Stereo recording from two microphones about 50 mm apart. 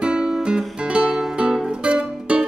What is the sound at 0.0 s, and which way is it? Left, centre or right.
Music, centre.